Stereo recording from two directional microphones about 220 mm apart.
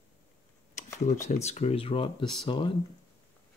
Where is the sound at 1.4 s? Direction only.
30° left (ahead or behind).